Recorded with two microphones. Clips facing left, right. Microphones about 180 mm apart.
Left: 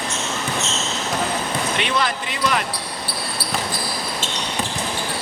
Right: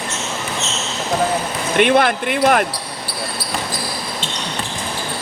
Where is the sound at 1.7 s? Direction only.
55° right (ahead or behind).